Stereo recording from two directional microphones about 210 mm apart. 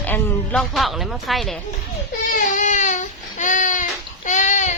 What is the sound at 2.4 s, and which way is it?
Baby cry, 35° left (ahead or behind).